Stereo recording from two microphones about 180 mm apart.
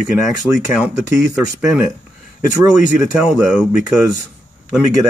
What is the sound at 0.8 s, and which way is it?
Speech, 5° right (ahead or behind).